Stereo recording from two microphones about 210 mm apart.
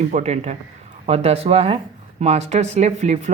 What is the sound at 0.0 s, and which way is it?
Speech, 30° right (ahead or behind).